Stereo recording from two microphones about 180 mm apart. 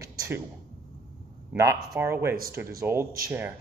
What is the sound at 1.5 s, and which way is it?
Speech, 15° right (ahead or behind).